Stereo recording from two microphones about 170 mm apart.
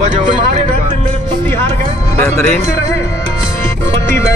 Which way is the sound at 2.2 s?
15° left (ahead or behind).